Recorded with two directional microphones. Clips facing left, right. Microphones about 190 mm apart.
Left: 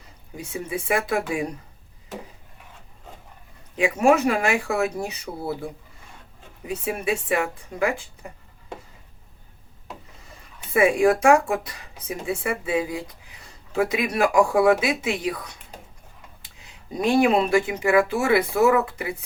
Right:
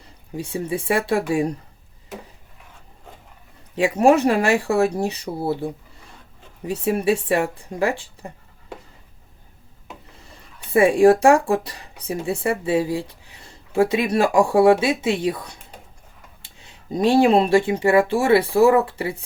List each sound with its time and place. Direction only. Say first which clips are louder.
0.3 s speech: right 5 dB; 35° right (ahead or behind)
3.8 s speech: right 3 dB; 35° right (ahead or behind)
10.8 s speech: right 5 dB; 30° right (ahead or behind)